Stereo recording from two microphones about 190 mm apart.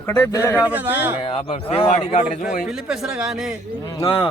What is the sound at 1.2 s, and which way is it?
Speech, 30° left (ahead or behind).